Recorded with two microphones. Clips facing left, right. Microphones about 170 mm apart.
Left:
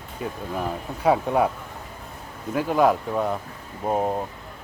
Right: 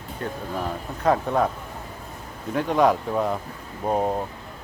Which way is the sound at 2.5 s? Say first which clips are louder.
Even; 5° left (ahead or behind).